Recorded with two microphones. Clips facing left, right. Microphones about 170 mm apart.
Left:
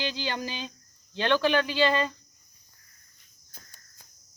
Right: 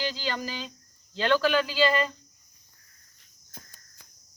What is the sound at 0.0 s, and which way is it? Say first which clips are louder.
Speech: even; 20° left (ahead or behind).